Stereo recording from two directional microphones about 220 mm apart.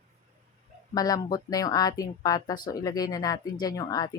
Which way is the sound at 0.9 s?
15° left (ahead or behind).